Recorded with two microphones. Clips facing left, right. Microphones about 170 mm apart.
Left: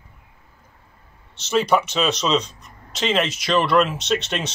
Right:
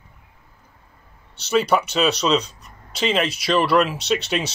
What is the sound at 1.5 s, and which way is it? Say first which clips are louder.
Speech: even; centre (ahead or behind).